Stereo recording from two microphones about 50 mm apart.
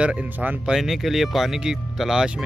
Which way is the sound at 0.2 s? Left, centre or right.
Right.